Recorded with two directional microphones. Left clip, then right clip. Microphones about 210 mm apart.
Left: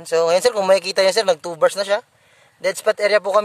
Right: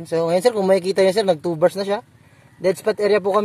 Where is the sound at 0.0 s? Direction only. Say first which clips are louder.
Left 2 dB; 20° left (ahead or behind).